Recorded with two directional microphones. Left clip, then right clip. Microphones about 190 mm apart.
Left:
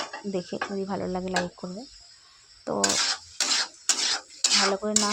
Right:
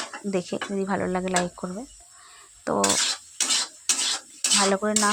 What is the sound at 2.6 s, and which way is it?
Dishes, 20° right (ahead or behind).